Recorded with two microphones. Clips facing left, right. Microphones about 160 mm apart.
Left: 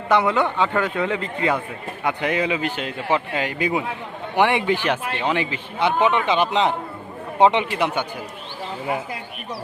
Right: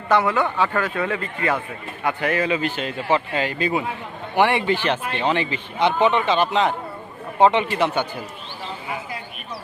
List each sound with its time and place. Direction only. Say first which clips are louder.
0.1 s speech: even; 20° left (ahead or behind)